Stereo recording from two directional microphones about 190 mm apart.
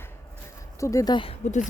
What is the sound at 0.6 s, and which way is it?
Speech, 15° left (ahead or behind).